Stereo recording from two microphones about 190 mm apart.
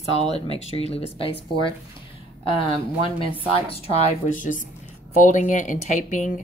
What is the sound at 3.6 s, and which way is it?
A woman's voice, 40° left (ahead or behind).